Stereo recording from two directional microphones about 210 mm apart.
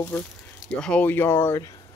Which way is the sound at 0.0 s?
5° left (ahead or behind).